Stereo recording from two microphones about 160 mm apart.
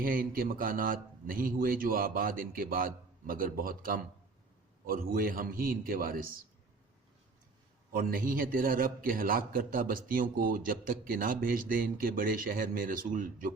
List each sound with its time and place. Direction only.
0.0 s a man's voice: 65° right (ahead or behind)
7.9 s a man's voice: 60° right (ahead or behind)